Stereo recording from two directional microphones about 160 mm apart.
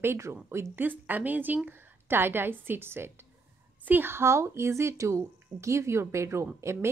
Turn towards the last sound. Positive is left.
turn(degrees=-15)  # may be behind; listen again after turning